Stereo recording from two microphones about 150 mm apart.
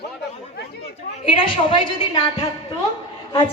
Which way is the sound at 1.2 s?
35° left (ahead or behind).